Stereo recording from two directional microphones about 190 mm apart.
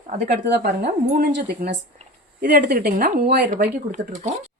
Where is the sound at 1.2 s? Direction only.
60° right (ahead or behind).